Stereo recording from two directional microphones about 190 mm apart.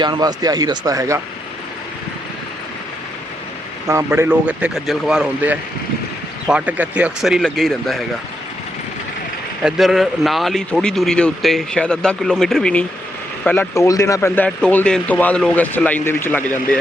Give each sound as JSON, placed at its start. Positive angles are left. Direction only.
{"t": 0.0, "sound": "a man's voice", "side_deg": -20}
{"t": 3.8, "sound": "a man's voice", "side_deg": -15}
{"t": 9.6, "sound": "a man's voice", "side_deg": 0}